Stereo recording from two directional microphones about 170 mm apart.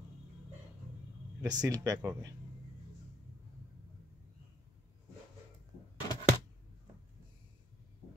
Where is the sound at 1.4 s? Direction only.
20° right (ahead or behind).